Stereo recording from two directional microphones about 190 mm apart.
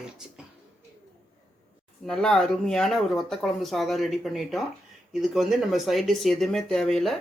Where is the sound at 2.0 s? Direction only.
Centre (ahead or behind).